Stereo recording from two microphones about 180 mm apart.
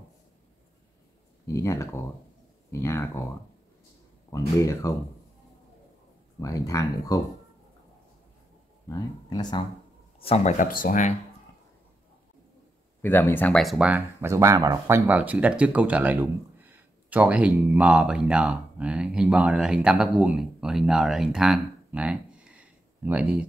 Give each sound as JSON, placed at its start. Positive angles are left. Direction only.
{"t": 1.5, "sound": "speech", "side_deg": 15}
{"t": 4.3, "sound": "speech", "side_deg": 15}
{"t": 6.4, "sound": "speech", "side_deg": 20}
{"t": 8.8, "sound": "speech", "side_deg": 20}
{"t": 10.1, "sound": "speech", "side_deg": 35}
{"t": 10.7, "sound": "speech", "side_deg": 50}
{"t": 13.0, "sound": "speech", "side_deg": 10}